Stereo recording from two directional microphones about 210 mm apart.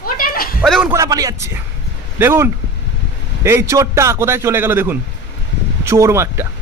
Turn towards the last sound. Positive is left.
turn(degrees=-15)  # may be behind; listen again after turning